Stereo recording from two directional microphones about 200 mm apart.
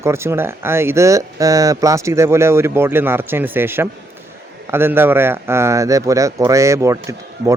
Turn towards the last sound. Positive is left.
turn(degrees=-15)  # may be behind; listen again after turning